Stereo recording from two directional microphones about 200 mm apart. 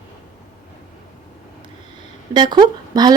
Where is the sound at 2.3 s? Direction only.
20° right (ahead or behind).